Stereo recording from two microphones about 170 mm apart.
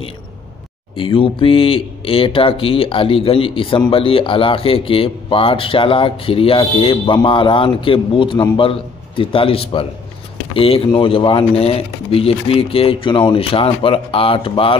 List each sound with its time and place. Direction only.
0.9 s speech: 30° left (ahead or behind)